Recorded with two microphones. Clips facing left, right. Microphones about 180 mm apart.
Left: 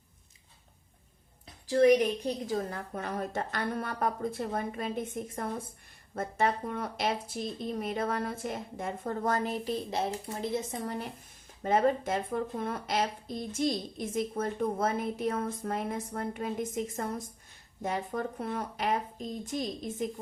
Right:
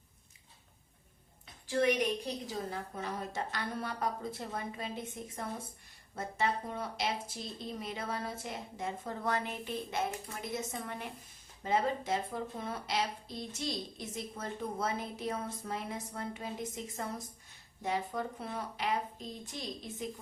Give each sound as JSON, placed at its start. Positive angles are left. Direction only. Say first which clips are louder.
{"t": 1.6, "sound": "speech", "louder": "left 7 dB", "side_deg": 35}
{"t": 11.6, "sound": "speech", "louder": "left 6 dB", "side_deg": 50}